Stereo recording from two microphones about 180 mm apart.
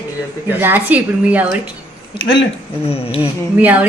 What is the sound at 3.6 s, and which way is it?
Speech, 10° right (ahead or behind).